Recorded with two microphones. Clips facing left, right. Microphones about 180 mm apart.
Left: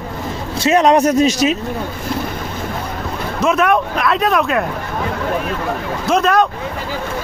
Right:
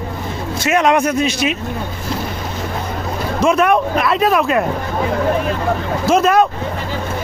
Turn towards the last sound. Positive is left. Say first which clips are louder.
# right 2 dB
turn(degrees=-5)  # may be behind; listen again after turning